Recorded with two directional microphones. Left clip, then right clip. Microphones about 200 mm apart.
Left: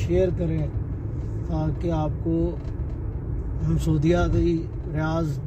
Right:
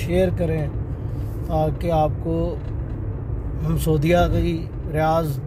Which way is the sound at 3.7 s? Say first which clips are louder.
Right 4 dB; 35° right (ahead or behind).